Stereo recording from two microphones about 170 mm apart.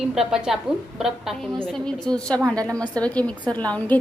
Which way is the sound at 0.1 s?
5° right (ahead or behind).